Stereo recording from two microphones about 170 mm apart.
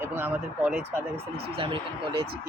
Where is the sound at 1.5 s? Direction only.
30° right (ahead or behind).